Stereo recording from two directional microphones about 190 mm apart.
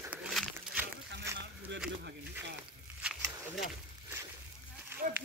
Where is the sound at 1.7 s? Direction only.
70° right (ahead or behind).